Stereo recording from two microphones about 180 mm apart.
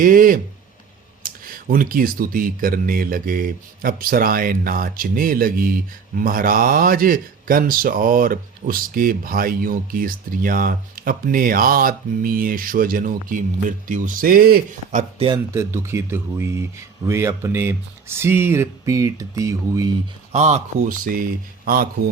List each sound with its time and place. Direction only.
0.0 s speech: 50° right (ahead or behind)
15.5 s speech: 15° right (ahead or behind)
20.3 s speech: 40° right (ahead or behind); by 22.1 s 55° right (ahead or behind)